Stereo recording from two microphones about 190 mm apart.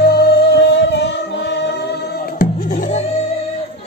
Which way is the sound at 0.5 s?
70° left (ahead or behind).